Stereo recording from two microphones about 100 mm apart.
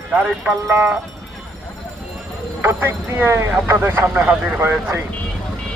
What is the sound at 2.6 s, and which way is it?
Speech, 20° right (ahead or behind).